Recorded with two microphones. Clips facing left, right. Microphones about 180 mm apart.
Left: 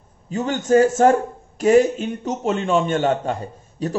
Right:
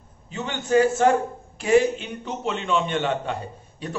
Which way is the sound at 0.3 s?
40° left (ahead or behind).